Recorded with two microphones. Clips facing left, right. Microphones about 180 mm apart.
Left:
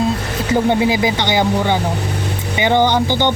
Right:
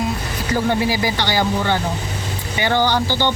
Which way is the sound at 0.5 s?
20° left (ahead or behind).